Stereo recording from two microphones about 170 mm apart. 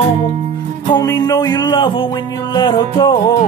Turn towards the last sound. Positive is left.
turn(degrees=25)  # may be behind; listen again after turning